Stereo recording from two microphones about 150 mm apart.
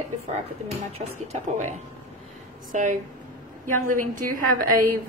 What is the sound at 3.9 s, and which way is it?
Speech, 65° right (ahead or behind).